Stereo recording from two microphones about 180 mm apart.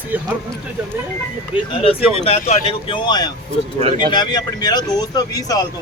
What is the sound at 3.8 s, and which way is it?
Speech, 40° right (ahead or behind).